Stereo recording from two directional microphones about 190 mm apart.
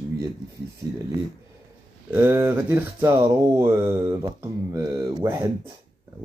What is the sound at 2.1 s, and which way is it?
Speech, 15° right (ahead or behind).